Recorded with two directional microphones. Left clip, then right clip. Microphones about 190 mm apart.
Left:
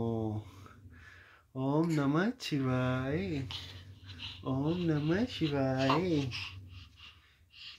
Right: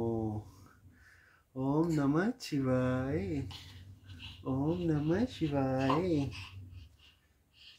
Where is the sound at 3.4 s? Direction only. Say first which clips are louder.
Left 7 dB; 5° left (ahead or behind).